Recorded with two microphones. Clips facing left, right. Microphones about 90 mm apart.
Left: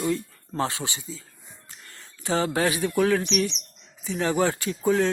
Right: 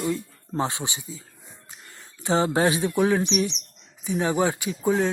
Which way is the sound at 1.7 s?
15° right (ahead or behind).